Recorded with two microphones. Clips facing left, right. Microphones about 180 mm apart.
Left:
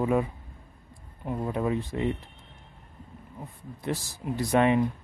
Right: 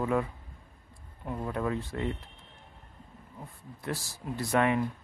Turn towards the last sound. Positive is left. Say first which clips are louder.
# left 4 dB
turn(degrees=20)  # may be behind; listen again after turning